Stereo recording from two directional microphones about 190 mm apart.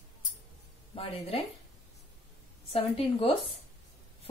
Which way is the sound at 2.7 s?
30° left (ahead or behind).